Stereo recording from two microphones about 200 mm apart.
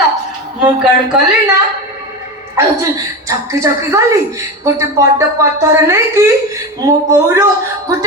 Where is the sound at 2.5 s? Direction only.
15° right (ahead or behind).